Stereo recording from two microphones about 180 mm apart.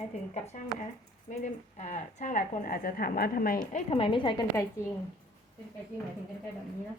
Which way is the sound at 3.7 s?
45° left (ahead or behind).